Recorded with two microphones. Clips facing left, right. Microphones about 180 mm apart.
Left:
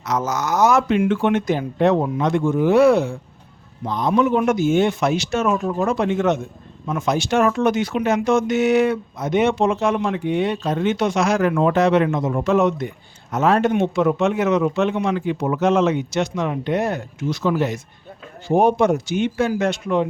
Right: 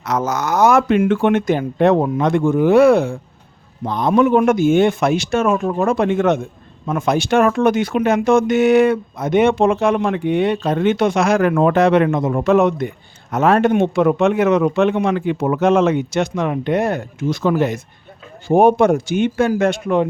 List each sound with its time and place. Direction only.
0.0 s a man's voice: 55° right (ahead or behind)